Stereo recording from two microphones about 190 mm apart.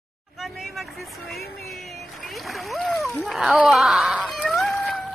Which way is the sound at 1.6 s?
Centre (ahead or behind).